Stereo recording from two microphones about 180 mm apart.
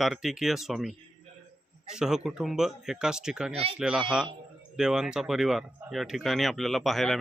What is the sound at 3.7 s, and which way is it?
Speech, 5° right (ahead or behind).